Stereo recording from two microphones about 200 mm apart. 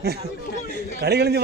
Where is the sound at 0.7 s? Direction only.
55° right (ahead or behind).